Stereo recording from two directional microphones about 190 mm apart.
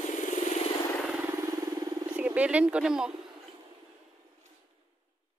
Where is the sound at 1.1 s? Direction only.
15° right (ahead or behind).